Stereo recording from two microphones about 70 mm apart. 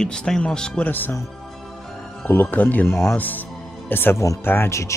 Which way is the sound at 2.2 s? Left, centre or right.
Left.